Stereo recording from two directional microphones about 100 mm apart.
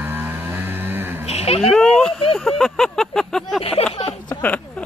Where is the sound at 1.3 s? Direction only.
90° left.